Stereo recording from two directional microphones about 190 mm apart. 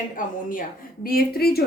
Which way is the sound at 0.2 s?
45° left (ahead or behind).